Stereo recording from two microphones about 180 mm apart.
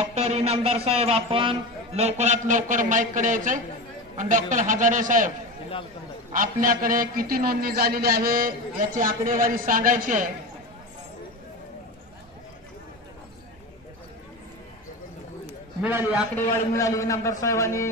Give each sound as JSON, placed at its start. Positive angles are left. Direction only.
{"t": 0.0, "sound": "a man's voice", "side_deg": -35}
{"t": 6.3, "sound": "a man's voice", "side_deg": -50}
{"t": 15.8, "sound": "a man's voice", "side_deg": -10}
{"t": 16.3, "sound": "a man's voice", "side_deg": 15}